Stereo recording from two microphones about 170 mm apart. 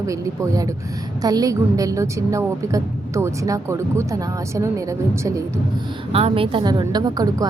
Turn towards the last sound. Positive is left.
turn(degrees=-25)  # may be behind; listen again after turning